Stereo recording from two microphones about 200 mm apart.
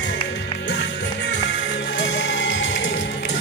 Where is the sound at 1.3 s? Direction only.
60° left (ahead or behind).